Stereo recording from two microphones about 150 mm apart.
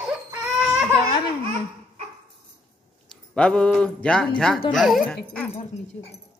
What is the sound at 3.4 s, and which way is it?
Speech, 5° left (ahead or behind).